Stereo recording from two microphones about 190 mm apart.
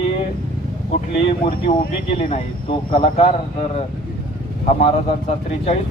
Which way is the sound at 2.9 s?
35° left (ahead or behind).